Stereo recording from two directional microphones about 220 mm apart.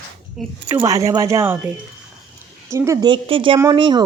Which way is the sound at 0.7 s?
15° right (ahead or behind).